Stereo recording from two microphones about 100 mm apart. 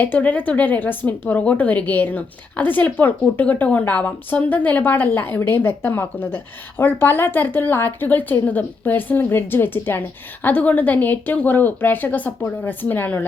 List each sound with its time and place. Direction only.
0.0 s a woman's voice: 20° left (ahead or behind)